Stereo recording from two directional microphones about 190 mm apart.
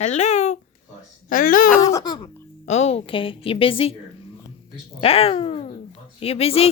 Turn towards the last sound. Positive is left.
turn(degrees=30)  # may be behind; listen again after turning